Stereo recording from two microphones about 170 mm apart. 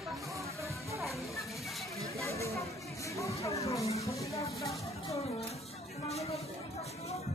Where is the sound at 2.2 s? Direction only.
15° left (ahead or behind).